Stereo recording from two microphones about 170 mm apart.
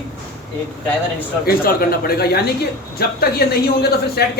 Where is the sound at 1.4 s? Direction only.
65° left (ahead or behind).